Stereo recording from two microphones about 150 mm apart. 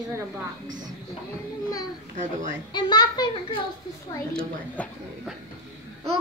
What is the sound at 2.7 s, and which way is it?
Speech, 30° left (ahead or behind).